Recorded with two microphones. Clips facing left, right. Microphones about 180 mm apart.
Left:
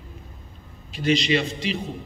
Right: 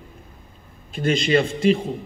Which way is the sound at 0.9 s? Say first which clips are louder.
Right 2 dB; 50° right (ahead or behind).